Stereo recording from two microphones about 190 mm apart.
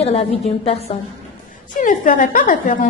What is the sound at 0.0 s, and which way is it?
Speech, 30° left (ahead or behind).